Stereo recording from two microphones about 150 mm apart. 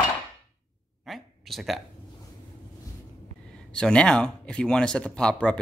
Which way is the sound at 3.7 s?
5° left (ahead or behind).